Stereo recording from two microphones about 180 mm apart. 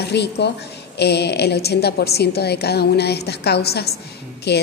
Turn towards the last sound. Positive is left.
turn(degrees=70)  # may be behind; listen again after turning